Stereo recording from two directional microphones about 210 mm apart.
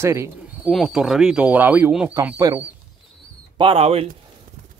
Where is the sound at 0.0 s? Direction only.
15° right (ahead or behind).